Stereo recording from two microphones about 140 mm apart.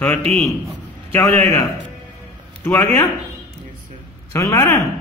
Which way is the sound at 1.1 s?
20° left (ahead or behind).